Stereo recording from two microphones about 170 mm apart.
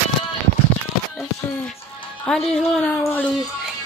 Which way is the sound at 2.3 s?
5° left (ahead or behind).